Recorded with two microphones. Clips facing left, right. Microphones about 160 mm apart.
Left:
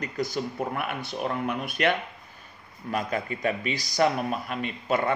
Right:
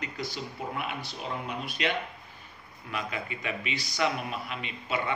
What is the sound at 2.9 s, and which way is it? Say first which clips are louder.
A man's voice: left 6 dB; 45° left (ahead or behind).